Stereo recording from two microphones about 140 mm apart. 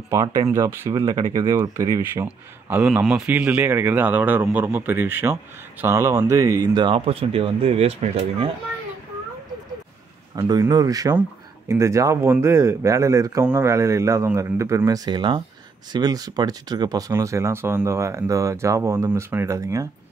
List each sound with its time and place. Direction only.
0.1 s speech: 25° right (ahead or behind)
2.2 s a man's voice: 10° right (ahead or behind); by 7.0 s 30° right (ahead or behind)
7.1 s speech: 40° right (ahead or behind)
10.3 s speech: 25° right (ahead or behind)
15.0 s speech: 35° right (ahead or behind)